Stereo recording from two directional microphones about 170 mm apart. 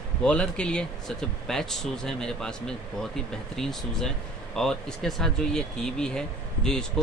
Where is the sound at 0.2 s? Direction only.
5° left (ahead or behind).